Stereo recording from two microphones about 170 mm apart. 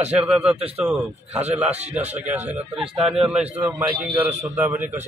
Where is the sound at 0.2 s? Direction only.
5° right (ahead or behind).